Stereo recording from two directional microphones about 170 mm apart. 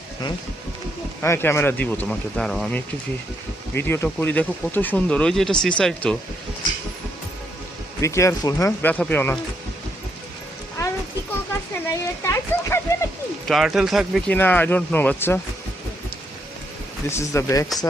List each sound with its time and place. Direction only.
1.2 s speech: 15° left (ahead or behind)
8.0 s speech: 15° left (ahead or behind)
10.8 s a sound: 20° left (ahead or behind)
13.5 s speech: centre (ahead or behind)
14.3 s speech: 10° left (ahead or behind)
17.1 s speech: 15° left (ahead or behind)